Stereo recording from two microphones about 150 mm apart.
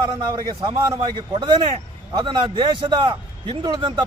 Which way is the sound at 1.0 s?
30° right (ahead or behind).